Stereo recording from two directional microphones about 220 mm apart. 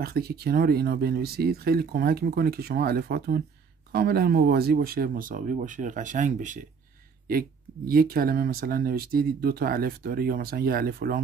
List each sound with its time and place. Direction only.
0.0 s speech: 45° right (ahead or behind)